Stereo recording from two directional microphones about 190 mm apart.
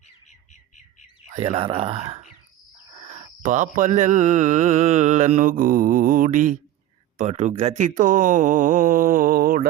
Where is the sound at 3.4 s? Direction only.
40° right (ahead or behind).